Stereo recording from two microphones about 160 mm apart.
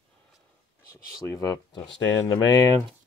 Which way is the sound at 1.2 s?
20° left (ahead or behind).